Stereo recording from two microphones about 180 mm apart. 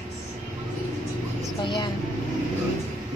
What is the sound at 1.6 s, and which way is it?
Vehicle, 25° left (ahead or behind).